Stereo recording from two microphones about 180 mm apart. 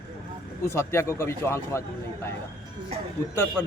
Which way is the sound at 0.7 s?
15° left (ahead or behind).